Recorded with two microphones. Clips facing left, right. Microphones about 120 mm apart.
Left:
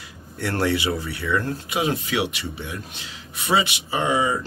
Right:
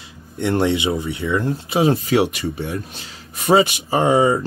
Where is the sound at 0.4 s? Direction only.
20° right (ahead or behind).